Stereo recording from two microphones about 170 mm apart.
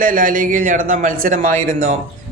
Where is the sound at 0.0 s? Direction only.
55° right (ahead or behind).